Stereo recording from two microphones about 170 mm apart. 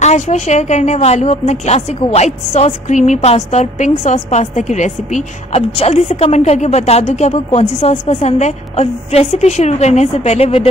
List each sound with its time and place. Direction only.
0.0 s a woman's voice: 40° left (ahead or behind)